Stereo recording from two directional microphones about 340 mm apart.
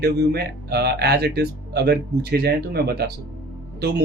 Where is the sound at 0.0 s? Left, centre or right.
Right.